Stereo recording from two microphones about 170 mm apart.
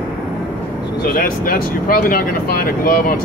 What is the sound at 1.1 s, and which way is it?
Speech, 60° left (ahead or behind).